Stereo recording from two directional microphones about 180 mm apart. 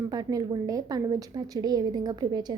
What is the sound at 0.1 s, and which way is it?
A woman's voice, 20° right (ahead or behind).